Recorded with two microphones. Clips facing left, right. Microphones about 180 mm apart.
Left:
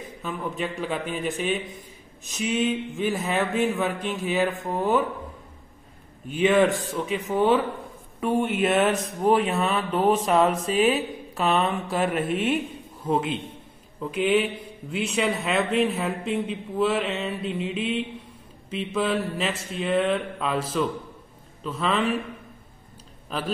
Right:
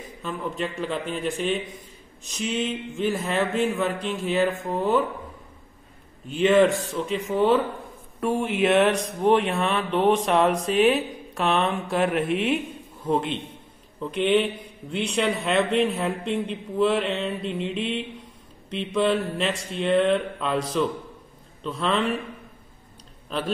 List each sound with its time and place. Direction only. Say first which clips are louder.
0.2 s mantra: right 1 dB; 5° left (ahead or behind)
6.3 s mantra: right 2 dB; 5° left (ahead or behind)